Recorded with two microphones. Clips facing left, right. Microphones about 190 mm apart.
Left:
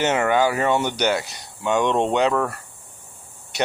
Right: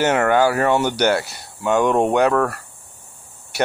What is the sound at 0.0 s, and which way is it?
Speech, 15° left (ahead or behind).